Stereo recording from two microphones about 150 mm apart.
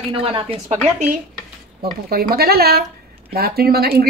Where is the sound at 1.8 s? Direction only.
90° right.